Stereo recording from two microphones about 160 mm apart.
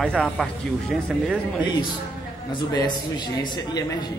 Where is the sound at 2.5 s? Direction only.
25° left (ahead or behind).